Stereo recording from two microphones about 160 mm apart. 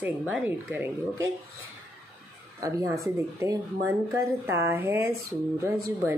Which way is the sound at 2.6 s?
20° right (ahead or behind).